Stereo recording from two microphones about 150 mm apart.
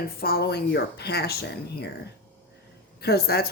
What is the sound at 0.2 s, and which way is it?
Speech, 90° left.